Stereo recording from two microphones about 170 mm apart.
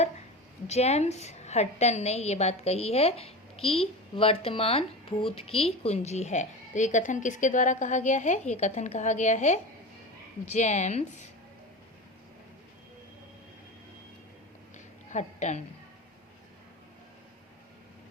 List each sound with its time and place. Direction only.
0.7 s a woman's voice: 40° left (ahead or behind)
15.1 s a woman's voice: 45° left (ahead or behind)